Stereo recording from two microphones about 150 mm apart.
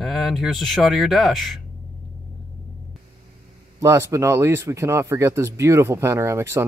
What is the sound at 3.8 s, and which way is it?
Speech, 20° right (ahead or behind).